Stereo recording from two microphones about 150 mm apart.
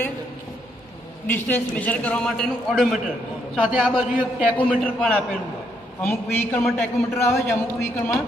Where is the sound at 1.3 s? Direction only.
10° left (ahead or behind); by 4.5 s 10° right (ahead or behind).